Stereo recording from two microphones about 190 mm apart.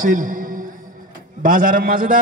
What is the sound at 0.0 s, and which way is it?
A man's voice, 45° right (ahead or behind).